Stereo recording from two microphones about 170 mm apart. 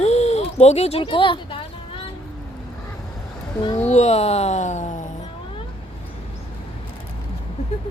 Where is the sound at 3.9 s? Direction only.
40° left (ahead or behind).